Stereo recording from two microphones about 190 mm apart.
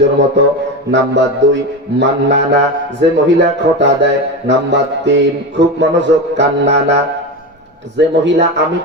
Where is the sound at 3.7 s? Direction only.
70° right (ahead or behind).